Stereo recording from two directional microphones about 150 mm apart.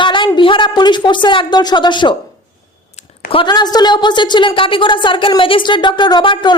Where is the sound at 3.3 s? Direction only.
35° left (ahead or behind).